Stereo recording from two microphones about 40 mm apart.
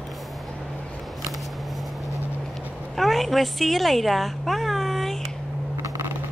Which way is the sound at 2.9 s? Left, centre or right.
Centre.